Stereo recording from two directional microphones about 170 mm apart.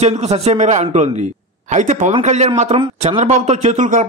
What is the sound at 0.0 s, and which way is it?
Speech, 40° right (ahead or behind).